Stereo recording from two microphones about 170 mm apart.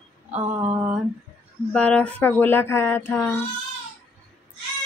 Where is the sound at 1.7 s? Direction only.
10° left (ahead or behind).